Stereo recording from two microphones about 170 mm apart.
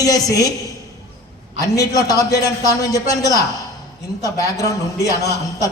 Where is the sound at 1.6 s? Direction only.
20° left (ahead or behind).